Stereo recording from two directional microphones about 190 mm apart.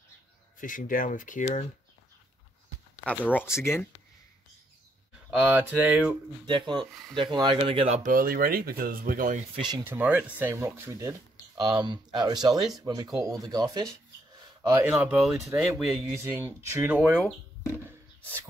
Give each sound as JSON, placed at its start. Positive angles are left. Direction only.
{"t": 0.6, "sound": "speech", "side_deg": 45}
{"t": 3.1, "sound": "speech", "side_deg": 10}
{"t": 5.3, "sound": "speech", "side_deg": -5}
{"t": 6.7, "sound": "speech", "side_deg": -25}
{"t": 9.8, "sound": "speech", "side_deg": -10}
{"t": 14.8, "sound": "speech", "side_deg": -10}
{"t": 15.7, "sound": "speech", "side_deg": -10}